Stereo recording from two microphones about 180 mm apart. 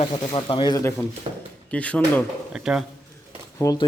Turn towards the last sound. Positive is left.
turn(degrees=20)  # may be behind; listen again after turning